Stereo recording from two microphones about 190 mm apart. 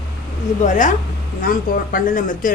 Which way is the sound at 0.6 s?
40° left (ahead or behind).